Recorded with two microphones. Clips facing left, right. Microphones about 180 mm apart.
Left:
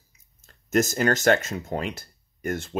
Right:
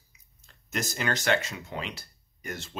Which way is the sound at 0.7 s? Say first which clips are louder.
Left 9 dB; 45° left (ahead or behind).